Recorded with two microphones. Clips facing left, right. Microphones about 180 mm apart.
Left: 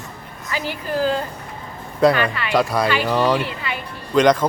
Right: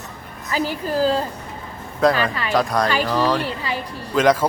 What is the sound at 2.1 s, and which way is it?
Speech, 35° right (ahead or behind).